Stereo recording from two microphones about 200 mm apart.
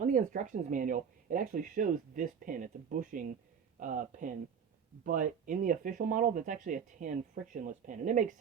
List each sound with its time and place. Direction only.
0.0 s speech: 40° right (ahead or behind)